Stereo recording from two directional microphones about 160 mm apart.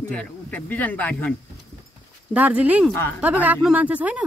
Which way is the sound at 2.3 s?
10° right (ahead or behind).